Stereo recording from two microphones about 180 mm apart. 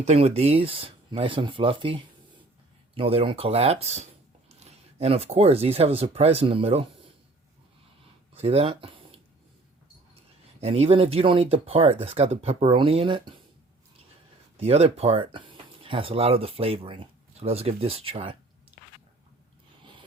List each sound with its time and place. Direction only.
0.0 s speech: 35° right (ahead or behind)
8.3 s a sound: 35° right (ahead or behind)
10.2 s speech: 35° right (ahead or behind)
14.6 s speech: 35° right (ahead or behind)
19.8 s zipper: 25° right (ahead or behind)